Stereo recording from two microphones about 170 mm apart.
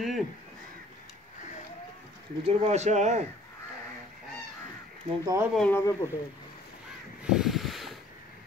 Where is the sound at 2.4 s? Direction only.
40° right (ahead or behind).